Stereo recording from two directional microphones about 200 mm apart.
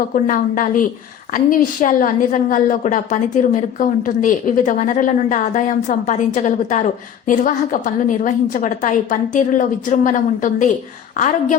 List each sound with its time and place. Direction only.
0.1 s a woman's voice: 40° left (ahead or behind)